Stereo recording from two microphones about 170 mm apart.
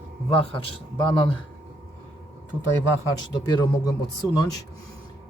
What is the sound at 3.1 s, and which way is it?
Speech, 20° left (ahead or behind).